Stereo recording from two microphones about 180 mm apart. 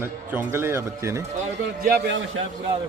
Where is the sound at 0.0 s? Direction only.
15° right (ahead or behind).